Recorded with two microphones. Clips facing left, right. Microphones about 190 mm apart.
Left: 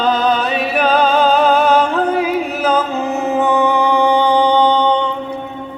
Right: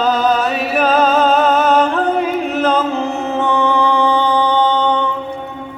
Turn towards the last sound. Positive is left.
turn(degrees=15)  # may be behind; listen again after turning